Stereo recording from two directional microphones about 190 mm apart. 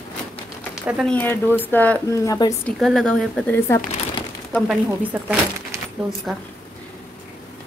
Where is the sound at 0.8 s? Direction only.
Centre (ahead or behind).